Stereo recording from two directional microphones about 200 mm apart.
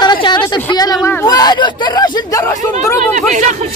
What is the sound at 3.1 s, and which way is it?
Speech, 35° right (ahead or behind).